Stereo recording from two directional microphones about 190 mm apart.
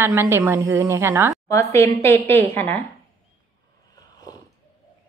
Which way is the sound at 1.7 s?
15° left (ahead or behind).